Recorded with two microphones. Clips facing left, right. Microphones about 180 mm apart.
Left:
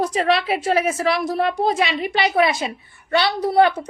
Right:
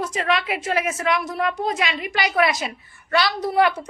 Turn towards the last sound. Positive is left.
turn(degrees=30)  # may be behind; listen again after turning